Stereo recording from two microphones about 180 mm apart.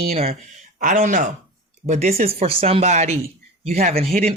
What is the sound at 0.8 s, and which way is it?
Speech, 45° right (ahead or behind).